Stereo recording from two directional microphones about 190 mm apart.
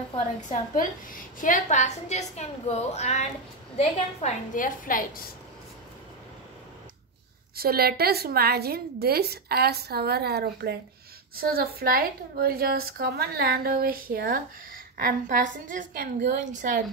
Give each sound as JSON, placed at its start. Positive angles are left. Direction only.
{"t": 1.4, "sound": "a woman's voice", "side_deg": 40}
{"t": 7.5, "sound": "a woman's voice", "side_deg": -55}